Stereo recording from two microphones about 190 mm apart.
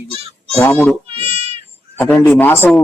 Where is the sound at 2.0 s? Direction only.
10° left (ahead or behind).